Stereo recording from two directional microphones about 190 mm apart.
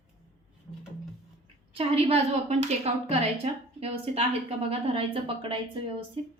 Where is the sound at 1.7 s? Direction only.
30° right (ahead or behind).